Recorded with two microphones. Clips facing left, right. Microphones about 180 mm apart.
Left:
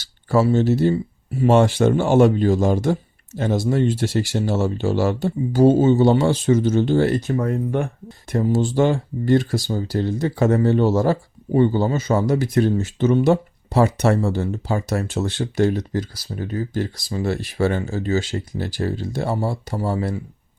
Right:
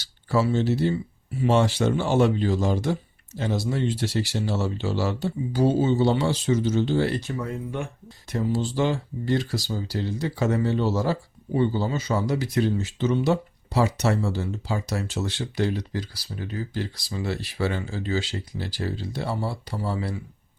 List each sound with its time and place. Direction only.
0.0 s speech: 50° left (ahead or behind)